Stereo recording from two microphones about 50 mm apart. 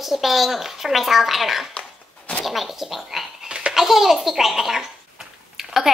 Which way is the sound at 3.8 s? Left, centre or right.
Centre.